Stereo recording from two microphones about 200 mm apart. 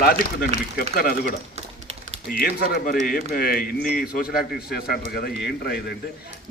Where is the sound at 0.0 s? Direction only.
50° left (ahead or behind).